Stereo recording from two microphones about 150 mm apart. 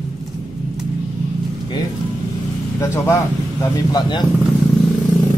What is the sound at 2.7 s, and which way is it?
Speech, 20° left (ahead or behind).